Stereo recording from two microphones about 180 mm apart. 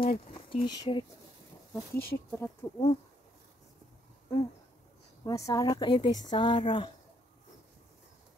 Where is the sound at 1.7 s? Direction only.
15° left (ahead or behind).